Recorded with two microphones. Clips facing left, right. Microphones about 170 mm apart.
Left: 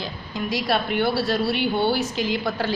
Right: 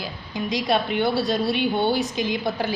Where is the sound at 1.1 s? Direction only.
20° right (ahead or behind).